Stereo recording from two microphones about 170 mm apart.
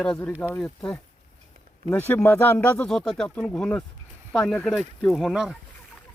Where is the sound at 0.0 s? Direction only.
5° left (ahead or behind).